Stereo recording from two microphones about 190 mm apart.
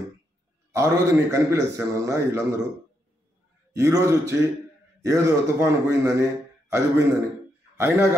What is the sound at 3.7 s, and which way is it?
A man's voice, 15° right (ahead or behind).